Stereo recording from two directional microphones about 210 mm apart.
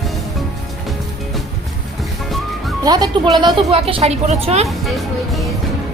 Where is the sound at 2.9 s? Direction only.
20° right (ahead or behind).